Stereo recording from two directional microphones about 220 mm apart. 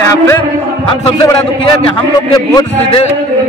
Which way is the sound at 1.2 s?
20° left (ahead or behind).